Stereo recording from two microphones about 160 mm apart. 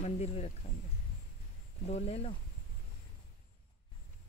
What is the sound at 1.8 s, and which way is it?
Speech, 40° left (ahead or behind).